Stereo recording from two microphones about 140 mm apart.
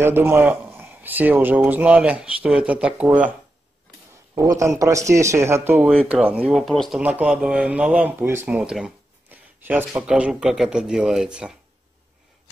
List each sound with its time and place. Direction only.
0.0 s speech: 15° right (ahead or behind)
4.4 s speech: 20° right (ahead or behind); by 7.0 s centre (ahead or behind)
7.0 s speech: 10° right (ahead or behind)